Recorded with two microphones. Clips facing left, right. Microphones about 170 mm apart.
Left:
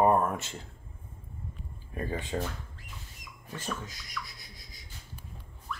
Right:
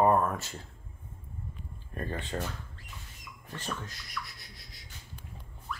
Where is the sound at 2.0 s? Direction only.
10° left (ahead or behind).